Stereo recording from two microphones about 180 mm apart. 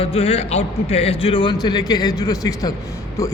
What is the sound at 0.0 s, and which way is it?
A man's voice, 35° left (ahead or behind).